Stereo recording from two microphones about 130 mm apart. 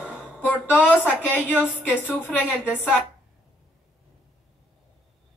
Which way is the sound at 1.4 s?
10° right (ahead or behind).